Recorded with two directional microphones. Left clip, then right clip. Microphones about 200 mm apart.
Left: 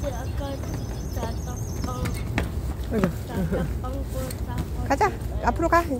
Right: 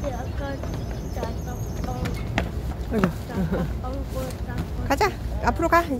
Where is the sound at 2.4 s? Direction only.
5° left (ahead or behind).